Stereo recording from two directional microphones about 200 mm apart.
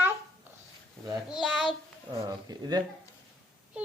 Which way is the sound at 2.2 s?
20° right (ahead or behind).